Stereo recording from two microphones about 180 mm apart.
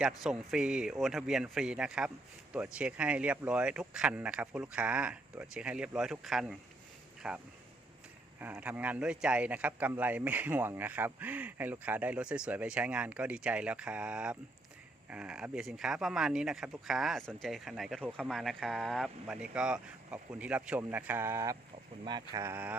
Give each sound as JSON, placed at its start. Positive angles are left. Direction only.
{"t": 0.2, "sound": "speech", "side_deg": -5}